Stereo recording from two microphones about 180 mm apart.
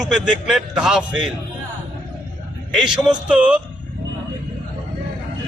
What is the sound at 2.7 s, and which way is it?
Speech, 5° right (ahead or behind).